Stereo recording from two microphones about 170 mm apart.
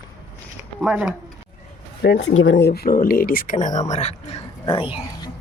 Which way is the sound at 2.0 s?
90° left.